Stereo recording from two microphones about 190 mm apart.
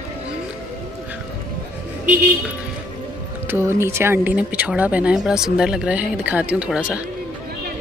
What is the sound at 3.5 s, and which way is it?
Speech, 10° right (ahead or behind).